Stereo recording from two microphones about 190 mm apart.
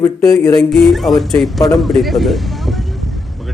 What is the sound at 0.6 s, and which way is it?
A man's voice, centre (ahead or behind).